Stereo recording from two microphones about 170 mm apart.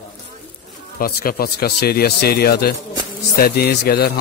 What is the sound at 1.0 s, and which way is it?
A man's voice, 60° left (ahead or behind).